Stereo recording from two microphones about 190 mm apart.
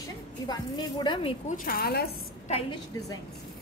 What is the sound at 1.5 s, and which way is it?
Speech, 50° left (ahead or behind).